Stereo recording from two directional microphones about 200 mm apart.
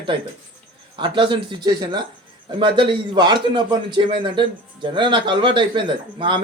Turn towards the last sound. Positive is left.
turn(degrees=-25)  # may be behind; listen again after turning